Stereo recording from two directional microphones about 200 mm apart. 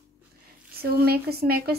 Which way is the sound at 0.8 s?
50° right (ahead or behind).